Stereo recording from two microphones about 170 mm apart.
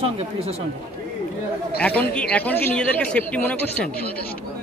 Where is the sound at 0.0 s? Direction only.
35° right (ahead or behind).